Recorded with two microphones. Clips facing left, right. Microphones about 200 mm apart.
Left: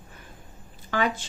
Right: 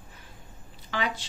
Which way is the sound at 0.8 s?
50° left (ahead or behind).